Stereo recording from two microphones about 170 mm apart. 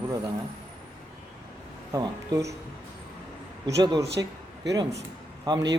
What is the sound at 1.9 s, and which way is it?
Speech, 20° right (ahead or behind).